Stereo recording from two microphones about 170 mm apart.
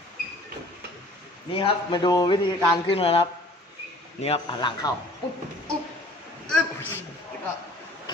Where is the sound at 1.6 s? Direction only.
30° left (ahead or behind).